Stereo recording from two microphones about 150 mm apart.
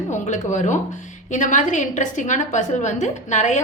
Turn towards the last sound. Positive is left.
turn(degrees=50)  # may be behind; listen again after turning